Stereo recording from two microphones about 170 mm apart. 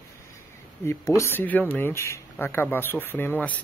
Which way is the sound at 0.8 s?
15° left (ahead or behind).